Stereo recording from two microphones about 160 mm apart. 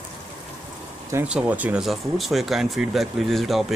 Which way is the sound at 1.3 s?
10° right (ahead or behind).